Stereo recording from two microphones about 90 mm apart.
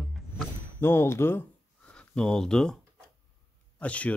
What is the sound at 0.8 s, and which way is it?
Speech, 25° left (ahead or behind).